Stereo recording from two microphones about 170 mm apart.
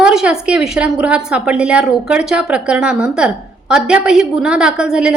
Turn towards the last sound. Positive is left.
turn(degrees=-5)  # may be behind; listen again after turning